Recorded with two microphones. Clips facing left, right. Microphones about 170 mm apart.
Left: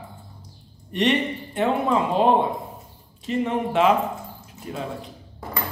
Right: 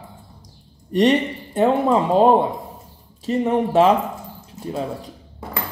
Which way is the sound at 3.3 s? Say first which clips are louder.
Right 5 dB; 35° right (ahead or behind).